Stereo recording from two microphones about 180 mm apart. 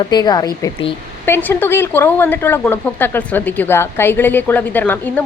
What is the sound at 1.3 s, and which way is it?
A woman's voice, 10° left (ahead or behind).